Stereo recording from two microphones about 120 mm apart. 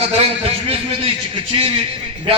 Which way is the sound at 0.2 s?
55° right (ahead or behind).